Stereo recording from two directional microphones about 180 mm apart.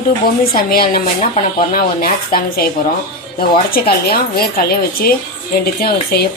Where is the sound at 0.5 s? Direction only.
55° left (ahead or behind).